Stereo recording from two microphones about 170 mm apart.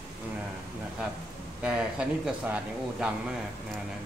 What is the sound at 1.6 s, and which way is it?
Speech, 5° right (ahead or behind).